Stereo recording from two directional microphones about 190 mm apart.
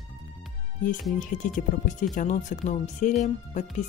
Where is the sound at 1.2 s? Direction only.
40° left (ahead or behind).